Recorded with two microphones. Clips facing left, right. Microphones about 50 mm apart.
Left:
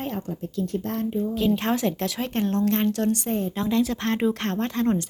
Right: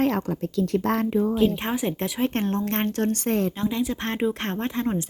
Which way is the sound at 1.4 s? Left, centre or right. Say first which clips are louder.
Even; centre.